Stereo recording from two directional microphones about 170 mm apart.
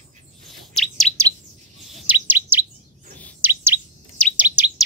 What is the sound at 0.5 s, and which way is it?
Bird, centre (ahead or behind).